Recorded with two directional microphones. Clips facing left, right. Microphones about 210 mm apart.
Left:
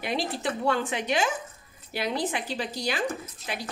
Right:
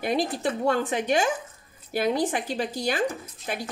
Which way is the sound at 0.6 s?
45° right (ahead or behind).